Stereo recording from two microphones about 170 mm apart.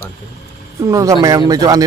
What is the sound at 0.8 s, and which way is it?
Speech, 20° right (ahead or behind).